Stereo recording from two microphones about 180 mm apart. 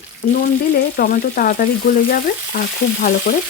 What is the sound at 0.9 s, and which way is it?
Frying, 50° left (ahead or behind).